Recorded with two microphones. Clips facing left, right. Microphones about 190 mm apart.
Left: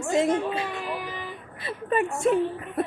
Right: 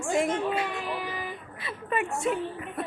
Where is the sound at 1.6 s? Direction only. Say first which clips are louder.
Left 5 dB; 40° left (ahead or behind).